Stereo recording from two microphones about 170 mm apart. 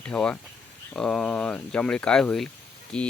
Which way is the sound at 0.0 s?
5° left (ahead or behind).